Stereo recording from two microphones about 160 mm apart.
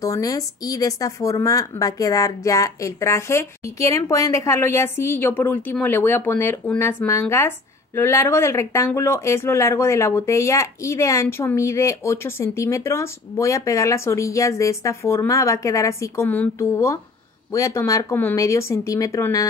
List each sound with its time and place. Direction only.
0.0 s speech: 20° left (ahead or behind)